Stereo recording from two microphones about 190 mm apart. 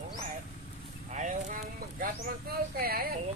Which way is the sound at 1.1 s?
40° right (ahead or behind).